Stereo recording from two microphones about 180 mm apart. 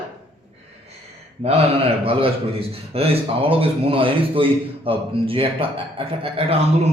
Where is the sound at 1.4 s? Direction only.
30° right (ahead or behind).